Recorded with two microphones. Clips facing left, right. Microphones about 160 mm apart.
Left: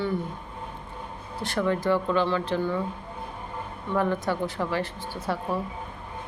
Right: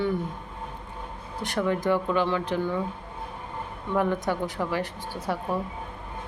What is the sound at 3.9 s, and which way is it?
A woman's voice, 15° right (ahead or behind).